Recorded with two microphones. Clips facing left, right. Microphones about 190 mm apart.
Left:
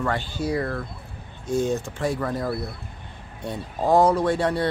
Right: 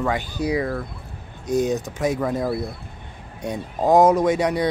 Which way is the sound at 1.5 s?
15° right (ahead or behind).